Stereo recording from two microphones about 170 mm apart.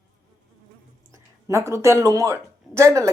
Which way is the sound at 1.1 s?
15° right (ahead or behind).